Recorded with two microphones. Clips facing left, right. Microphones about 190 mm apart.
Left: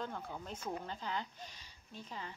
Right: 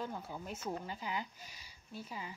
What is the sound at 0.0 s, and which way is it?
Speech, 10° right (ahead or behind).